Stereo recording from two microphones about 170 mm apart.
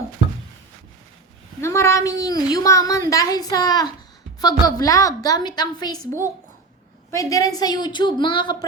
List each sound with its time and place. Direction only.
1.6 s speech: 15° left (ahead or behind)
7.2 s speech: 20° left (ahead or behind)